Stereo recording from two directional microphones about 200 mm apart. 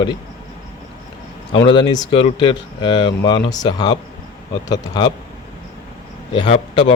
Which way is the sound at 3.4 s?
65° left (ahead or behind).